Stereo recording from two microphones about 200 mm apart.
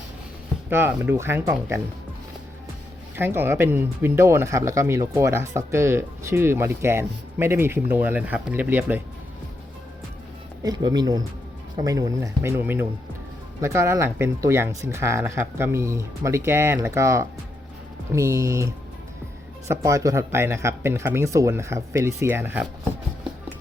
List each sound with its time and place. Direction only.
0.7 s speech: 10° right (ahead or behind)
3.2 s speech: 10° right (ahead or behind)
10.6 s speech: 20° right (ahead or behind)